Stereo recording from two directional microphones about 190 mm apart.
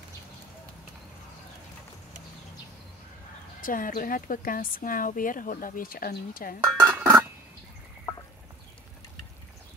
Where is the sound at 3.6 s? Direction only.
45° left (ahead or behind).